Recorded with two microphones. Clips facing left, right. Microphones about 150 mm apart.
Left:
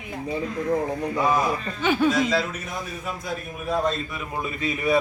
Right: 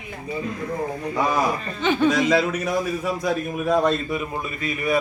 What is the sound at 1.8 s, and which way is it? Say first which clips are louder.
Speech: right 1 dB; 10° left (ahead or behind).